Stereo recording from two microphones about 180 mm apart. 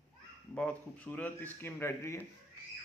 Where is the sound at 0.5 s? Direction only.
5° left (ahead or behind).